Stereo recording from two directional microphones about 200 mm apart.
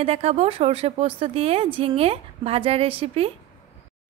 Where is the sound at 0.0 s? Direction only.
30° right (ahead or behind).